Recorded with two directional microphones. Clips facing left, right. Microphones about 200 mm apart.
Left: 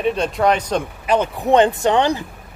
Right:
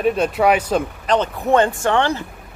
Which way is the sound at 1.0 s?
10° left (ahead or behind).